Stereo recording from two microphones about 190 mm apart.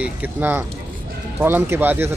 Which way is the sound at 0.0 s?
10° right (ahead or behind).